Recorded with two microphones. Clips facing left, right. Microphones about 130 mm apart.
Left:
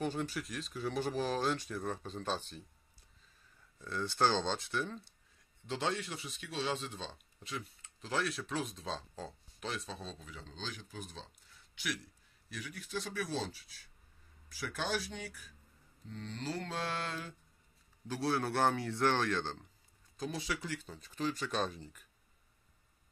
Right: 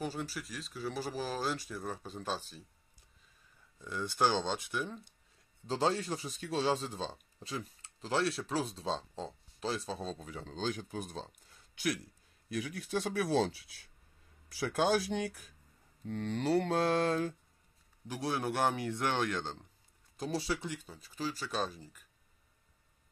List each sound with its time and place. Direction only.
0.0 s speech: 5° right (ahead or behind)
3.8 s speech: 15° right (ahead or behind)
5.7 s speech: 35° right (ahead or behind); by 11.3 s 50° right (ahead or behind)
12.7 s speech: 55° right (ahead or behind)
14.8 s speech: 65° right (ahead or behind)
16.8 s mantra: 45° right (ahead or behind)
18.0 s speech: 15° right (ahead or behind)
20.2 s speech: 30° right (ahead or behind); by 22.0 s 5° right (ahead or behind)